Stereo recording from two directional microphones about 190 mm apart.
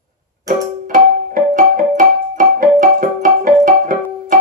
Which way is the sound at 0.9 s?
45° right (ahead or behind).